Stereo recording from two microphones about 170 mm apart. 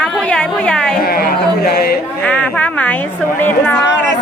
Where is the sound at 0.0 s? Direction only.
5° left (ahead or behind).